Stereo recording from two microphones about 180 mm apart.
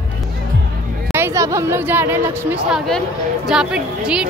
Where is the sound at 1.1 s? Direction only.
15° right (ahead or behind).